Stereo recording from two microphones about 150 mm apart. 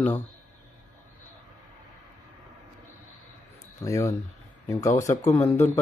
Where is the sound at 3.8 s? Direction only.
20° left (ahead or behind).